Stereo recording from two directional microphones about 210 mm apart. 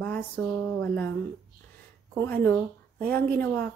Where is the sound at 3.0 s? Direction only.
45° right (ahead or behind).